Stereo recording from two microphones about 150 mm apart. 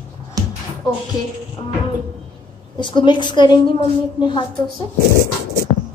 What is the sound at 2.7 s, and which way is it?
Speech, 30° left (ahead or behind).